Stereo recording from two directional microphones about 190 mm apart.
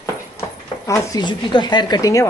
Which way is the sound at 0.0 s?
15° left (ahead or behind).